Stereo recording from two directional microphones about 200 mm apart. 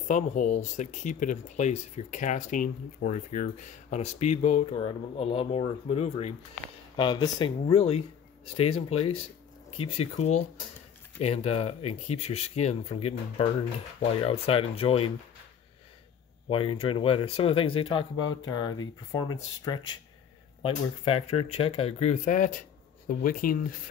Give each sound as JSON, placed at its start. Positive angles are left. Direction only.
{"t": 0.1, "sound": "speech", "side_deg": 40}
{"t": 16.4, "sound": "speech", "side_deg": 25}